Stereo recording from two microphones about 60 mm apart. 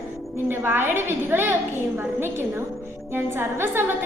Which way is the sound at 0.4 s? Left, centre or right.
Right.